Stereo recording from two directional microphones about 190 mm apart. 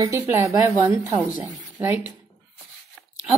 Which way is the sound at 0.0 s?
15° right (ahead or behind).